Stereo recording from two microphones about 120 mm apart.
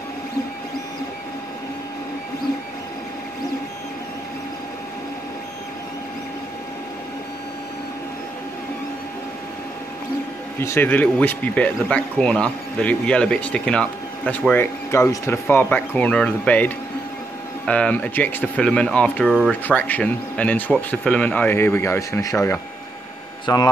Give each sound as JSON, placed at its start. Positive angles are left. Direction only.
{"t": 10.6, "sound": "speech", "side_deg": 20}
{"t": 19.2, "sound": "speech", "side_deg": -5}
{"t": 19.7, "sound": "speech", "side_deg": 10}
{"t": 21.5, "sound": "speech", "side_deg": 20}
{"t": 23.4, "sound": "speech", "side_deg": 30}